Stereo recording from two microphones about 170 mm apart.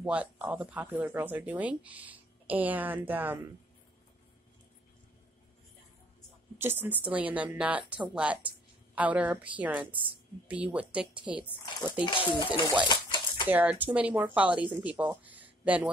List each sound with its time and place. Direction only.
0.0 s speech: 10° right (ahead or behind)
6.6 s speech: 10° right (ahead or behind)
12.0 s speech: 30° left (ahead or behind)
12.8 s a sound: 25° left (ahead or behind)
13.5 s speech: 10° right (ahead or behind)